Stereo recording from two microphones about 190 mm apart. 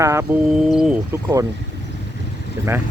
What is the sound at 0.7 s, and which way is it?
Speech, 5° right (ahead or behind).